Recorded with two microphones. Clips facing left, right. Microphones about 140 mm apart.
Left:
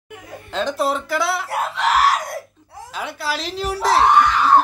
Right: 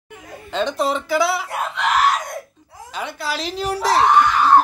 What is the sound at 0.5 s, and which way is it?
Speech, centre (ahead or behind).